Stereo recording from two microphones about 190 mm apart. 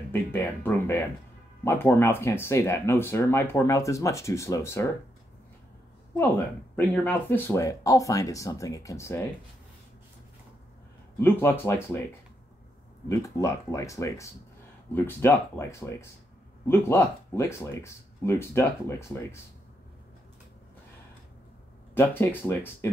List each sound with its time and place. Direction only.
0.1 s speech: 10° left (ahead or behind)
7.1 s speech: 10° left (ahead or behind)
11.1 s speech: 10° left (ahead or behind)
13.1 s speech: 15° left (ahead or behind)
21.9 s speech: 10° left (ahead or behind)